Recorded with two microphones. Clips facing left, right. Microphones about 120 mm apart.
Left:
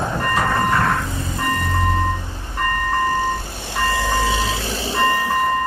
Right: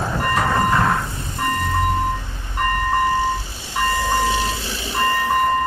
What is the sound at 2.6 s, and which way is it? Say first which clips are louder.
Vehicle: right 1 dB; 10° right (ahead or behind).